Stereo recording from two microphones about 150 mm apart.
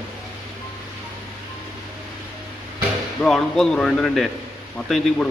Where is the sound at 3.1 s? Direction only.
5° left (ahead or behind).